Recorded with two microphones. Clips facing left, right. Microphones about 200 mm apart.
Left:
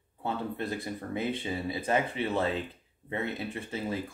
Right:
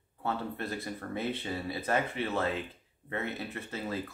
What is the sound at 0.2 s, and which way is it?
Speech, 15° left (ahead or behind).